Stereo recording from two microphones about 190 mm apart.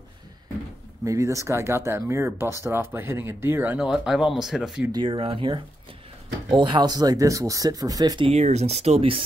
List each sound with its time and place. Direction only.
1.0 s speech: 15° right (ahead or behind)
4.9 s speech: 25° right (ahead or behind)
8.3 s speech: 35° right (ahead or behind)